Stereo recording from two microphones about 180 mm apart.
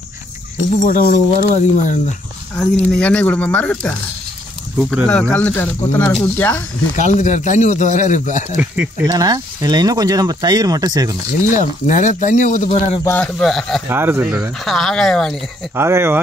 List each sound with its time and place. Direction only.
0.8 s speech: 50° left (ahead or behind)
3.0 s speech: 5° left (ahead or behind)
7.0 s speech: 40° left (ahead or behind)
8.5 s speech: 10° right (ahead or behind)
9.0 s speech: 20° right (ahead or behind)
11.4 s speech: 45° left (ahead or behind)
13.0 s speech: 10° left (ahead or behind)
13.8 s speech: 15° right (ahead or behind)
15.7 s speech: 15° right (ahead or behind)